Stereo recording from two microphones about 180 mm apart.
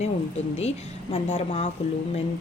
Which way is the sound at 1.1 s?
30° left (ahead or behind).